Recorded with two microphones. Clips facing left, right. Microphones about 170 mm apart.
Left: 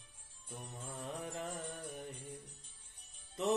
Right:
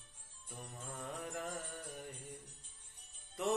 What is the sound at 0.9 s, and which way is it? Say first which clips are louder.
Music: left 1 dB; 20° left (ahead or behind).